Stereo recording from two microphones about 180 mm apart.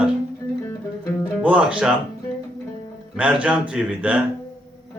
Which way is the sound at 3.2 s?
5° right (ahead or behind).